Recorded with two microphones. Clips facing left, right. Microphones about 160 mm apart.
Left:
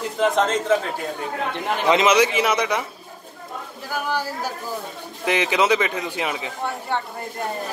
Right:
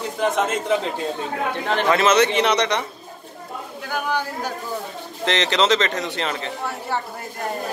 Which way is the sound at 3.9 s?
5° left (ahead or behind).